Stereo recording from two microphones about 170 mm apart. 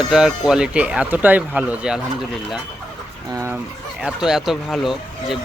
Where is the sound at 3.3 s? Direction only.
20° right (ahead or behind).